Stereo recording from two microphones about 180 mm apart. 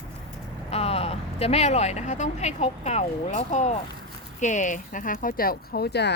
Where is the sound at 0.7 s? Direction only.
35° left (ahead or behind).